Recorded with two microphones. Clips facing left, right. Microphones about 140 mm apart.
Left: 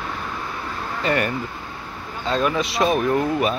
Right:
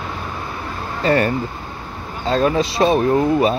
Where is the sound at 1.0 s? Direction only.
35° right (ahead or behind).